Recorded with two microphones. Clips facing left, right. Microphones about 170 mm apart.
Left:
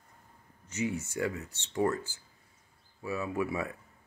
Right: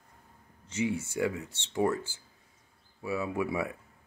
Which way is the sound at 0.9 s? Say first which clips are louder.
Right 2 dB; 10° right (ahead or behind).